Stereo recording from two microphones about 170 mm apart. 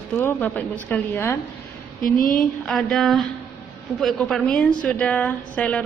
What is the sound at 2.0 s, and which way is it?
Speech, 55° left (ahead or behind).